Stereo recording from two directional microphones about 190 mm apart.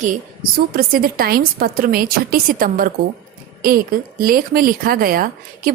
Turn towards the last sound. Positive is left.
turn(degrees=-50)  # may be behind; listen again after turning